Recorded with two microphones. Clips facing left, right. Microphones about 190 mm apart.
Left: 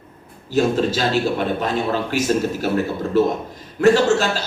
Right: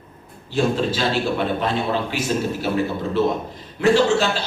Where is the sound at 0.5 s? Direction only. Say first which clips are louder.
Left 2 dB; 45° left (ahead or behind).